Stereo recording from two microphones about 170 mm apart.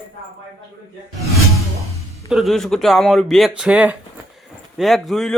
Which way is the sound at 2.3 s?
Centre (ahead or behind).